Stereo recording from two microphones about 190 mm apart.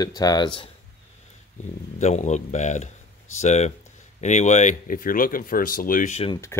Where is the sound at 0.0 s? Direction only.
20° left (ahead or behind).